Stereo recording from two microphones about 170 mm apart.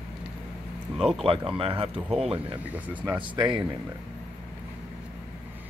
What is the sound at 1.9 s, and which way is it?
Speech, centre (ahead or behind).